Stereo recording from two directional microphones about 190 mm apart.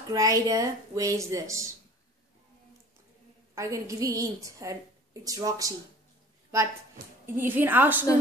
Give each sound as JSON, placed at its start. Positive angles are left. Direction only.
{"t": 0.1, "sound": "a woman's voice", "side_deg": -20}
{"t": 3.5, "sound": "a woman's voice", "side_deg": -15}
{"t": 7.2, "sound": "a woman's voice", "side_deg": -10}